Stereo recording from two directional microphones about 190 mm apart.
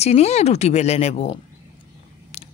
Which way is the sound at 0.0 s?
35° left (ahead or behind).